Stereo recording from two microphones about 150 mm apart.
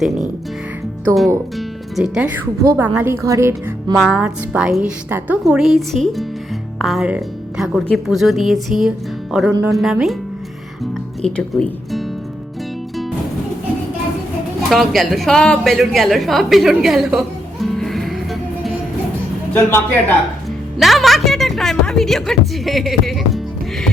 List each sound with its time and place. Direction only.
1.5 s music: 5° right (ahead or behind)
2.7 s speech: 15° right (ahead or behind)
3.9 s a woman's voice: 5° right (ahead or behind)
11.2 s speech: 5° left (ahead or behind)
14.7 s a woman's voice: centre (ahead or behind)
19.5 s a man's voice: 15° left (ahead or behind)
20.7 s a woman's voice: centre (ahead or behind)